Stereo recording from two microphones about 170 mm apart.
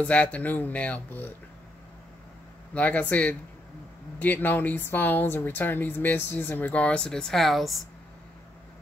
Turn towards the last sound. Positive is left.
turn(degrees=0)  # may be behind; listen again after turning